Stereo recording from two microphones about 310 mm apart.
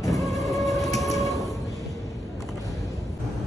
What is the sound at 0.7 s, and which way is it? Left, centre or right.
Train, centre.